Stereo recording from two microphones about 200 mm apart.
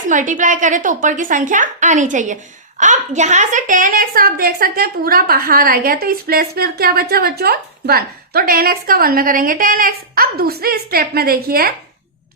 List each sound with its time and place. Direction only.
0.1 s a woman's voice: 40° right (ahead or behind)